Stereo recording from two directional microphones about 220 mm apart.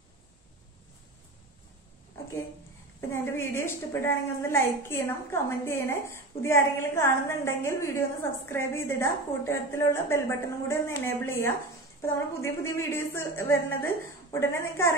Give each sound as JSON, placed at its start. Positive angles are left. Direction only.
{"t": 3.1, "sound": "a woman's voice", "side_deg": 10}